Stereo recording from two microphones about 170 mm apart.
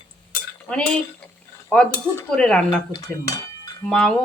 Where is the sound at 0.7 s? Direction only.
5° left (ahead or behind).